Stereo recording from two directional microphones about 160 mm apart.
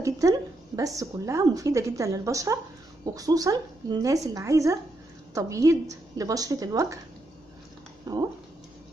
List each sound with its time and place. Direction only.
0.0 s a woman's voice: 20° right (ahead or behind)
8.0 s speech: 25° right (ahead or behind)